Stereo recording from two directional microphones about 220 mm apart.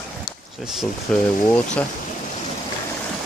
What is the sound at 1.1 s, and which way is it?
Speech, 5° left (ahead or behind).